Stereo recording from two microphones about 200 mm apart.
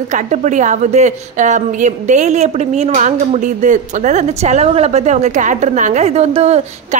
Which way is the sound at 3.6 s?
35° right (ahead or behind).